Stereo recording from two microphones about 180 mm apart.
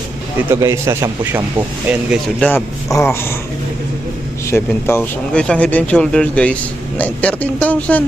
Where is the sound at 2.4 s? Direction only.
10° left (ahead or behind).